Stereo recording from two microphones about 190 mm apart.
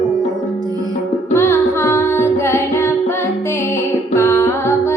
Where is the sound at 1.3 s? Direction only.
15° left (ahead or behind).